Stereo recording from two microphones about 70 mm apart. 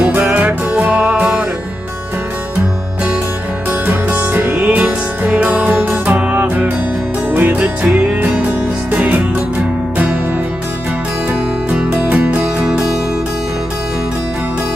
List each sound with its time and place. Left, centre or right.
0.3 s music: right
3.8 s music: right
12.1 s music: right